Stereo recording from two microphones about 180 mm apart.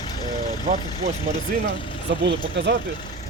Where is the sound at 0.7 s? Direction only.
35° right (ahead or behind).